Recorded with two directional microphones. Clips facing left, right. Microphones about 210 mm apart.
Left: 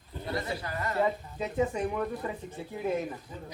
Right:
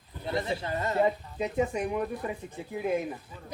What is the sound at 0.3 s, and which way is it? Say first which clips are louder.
Speech: right 4 dB; 25° right (ahead or behind).